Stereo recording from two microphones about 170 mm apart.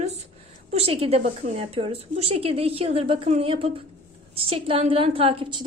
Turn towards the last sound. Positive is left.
turn(degrees=-30)  # may be behind; listen again after turning